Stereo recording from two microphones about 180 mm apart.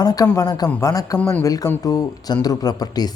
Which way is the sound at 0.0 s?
20° left (ahead or behind).